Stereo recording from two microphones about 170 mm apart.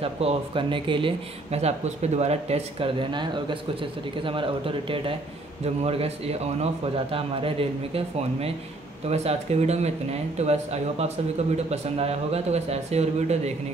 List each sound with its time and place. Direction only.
0.0 s speech: 35° right (ahead or behind)